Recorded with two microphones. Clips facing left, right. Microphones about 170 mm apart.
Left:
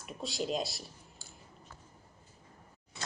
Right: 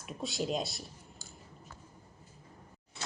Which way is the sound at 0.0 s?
Centre (ahead or behind).